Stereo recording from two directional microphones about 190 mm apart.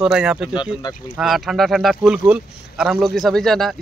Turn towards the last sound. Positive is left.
turn(degrees=0)  # may be behind; listen again after turning